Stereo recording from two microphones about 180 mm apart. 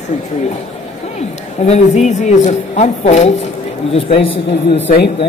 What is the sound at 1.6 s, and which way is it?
A woman's voice, 40° left (ahead or behind).